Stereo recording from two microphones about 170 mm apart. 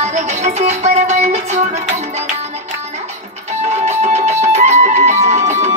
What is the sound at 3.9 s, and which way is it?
Music, 40° right (ahead or behind).